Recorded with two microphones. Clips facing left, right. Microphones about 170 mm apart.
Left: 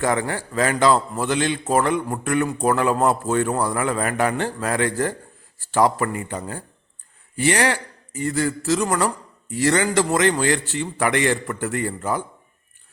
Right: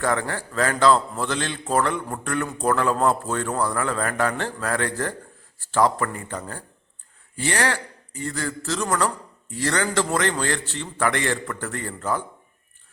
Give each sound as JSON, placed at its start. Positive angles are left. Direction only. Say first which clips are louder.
{"t": 0.0, "sound": "a man's voice", "louder": "left 2 dB", "side_deg": 15}